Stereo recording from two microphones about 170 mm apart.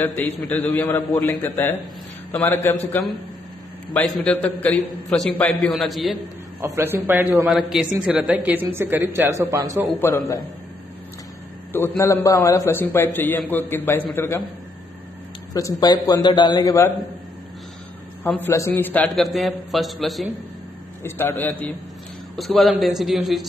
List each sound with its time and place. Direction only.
0.0 s a man's voice: 10° left (ahead or behind)
6.6 s a man's voice: 15° right (ahead or behind)
9.9 s a man's voice: 15° left (ahead or behind)
12.0 s a man's voice: 20° left (ahead or behind)
15.5 s a man's voice: 20° left (ahead or behind)
18.2 s a man's voice: 15° left (ahead or behind)
21.0 s a man's voice: 10° left (ahead or behind)